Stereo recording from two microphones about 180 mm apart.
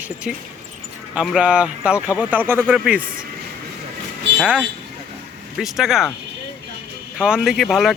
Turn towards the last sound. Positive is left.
turn(degrees=0)  # may be behind; listen again after turning